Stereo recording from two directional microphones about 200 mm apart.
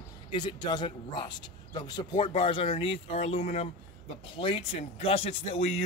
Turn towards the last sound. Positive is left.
turn(degrees=30)  # may be behind; listen again after turning